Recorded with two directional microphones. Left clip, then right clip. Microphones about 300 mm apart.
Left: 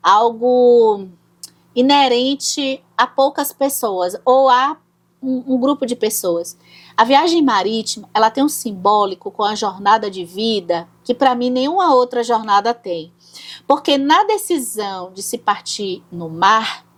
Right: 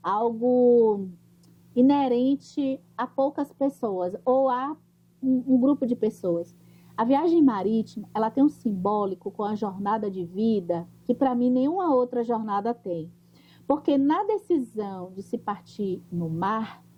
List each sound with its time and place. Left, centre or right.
0.0 s speech: centre
0.3 s speech: left
1.4 s speech: centre
4.2 s speech: left
4.4 s speech: centre
5.2 s speech: left
5.8 s speech: centre
16.1 s speech: centre
16.4 s speech: centre